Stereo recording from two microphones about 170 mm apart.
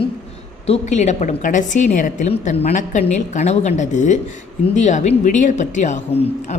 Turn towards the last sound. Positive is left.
turn(degrees=40)  # may be behind; listen again after turning